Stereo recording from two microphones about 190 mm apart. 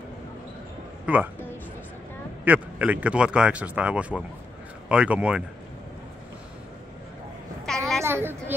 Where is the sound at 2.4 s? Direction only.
10° right (ahead or behind).